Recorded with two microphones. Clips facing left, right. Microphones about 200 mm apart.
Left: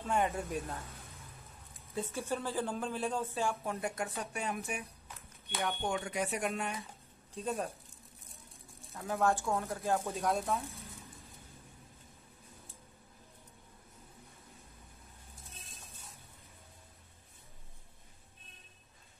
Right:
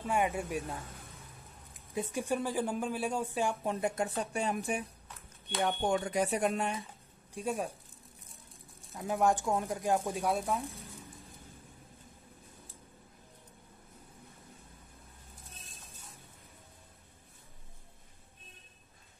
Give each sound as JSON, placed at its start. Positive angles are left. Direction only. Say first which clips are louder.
{"t": 0.0, "sound": "speech", "louder": "right 1 dB", "side_deg": -10}
{"t": 2.0, "sound": "speech", "louder": "right 4 dB", "side_deg": -15}
{"t": 7.3, "sound": "speech", "louder": "right 2 dB", "side_deg": -10}
{"t": 8.9, "sound": "speech", "louder": "right 2 dB", "side_deg": -15}